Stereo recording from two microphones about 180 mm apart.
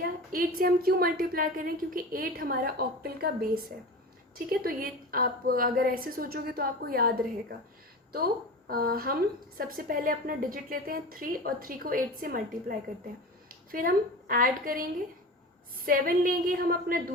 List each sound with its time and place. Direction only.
0.0 s a woman's voice: 55° right (ahead or behind)
8.6 s a woman's voice: 55° right (ahead or behind)
15.9 s a woman's voice: 50° right (ahead or behind)